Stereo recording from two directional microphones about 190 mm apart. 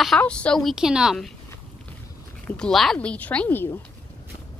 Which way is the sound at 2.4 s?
5° left (ahead or behind).